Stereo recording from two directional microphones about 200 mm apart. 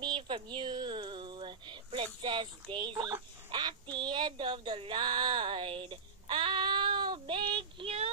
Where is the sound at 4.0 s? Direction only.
20° right (ahead or behind).